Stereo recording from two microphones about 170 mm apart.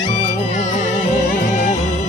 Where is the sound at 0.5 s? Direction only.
45° left (ahead or behind).